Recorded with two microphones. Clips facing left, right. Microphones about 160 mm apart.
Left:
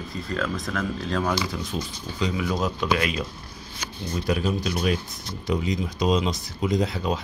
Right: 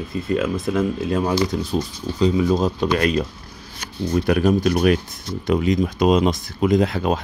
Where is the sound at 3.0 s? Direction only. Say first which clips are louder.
Right 7 dB; 45° right (ahead or behind).